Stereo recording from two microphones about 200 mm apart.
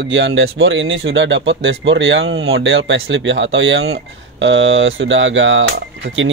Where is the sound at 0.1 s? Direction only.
70° right (ahead or behind).